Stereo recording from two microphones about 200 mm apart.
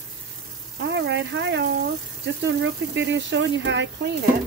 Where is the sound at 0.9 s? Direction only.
60° right (ahead or behind).